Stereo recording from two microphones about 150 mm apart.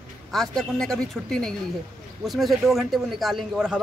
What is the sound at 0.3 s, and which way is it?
A man's voice, centre (ahead or behind).